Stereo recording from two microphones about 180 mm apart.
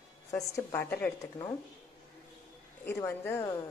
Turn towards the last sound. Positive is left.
turn(degrees=15)  # may be behind; listen again after turning